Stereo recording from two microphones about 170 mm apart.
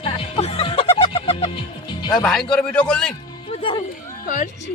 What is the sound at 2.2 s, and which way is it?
Speech, 5° left (ahead or behind).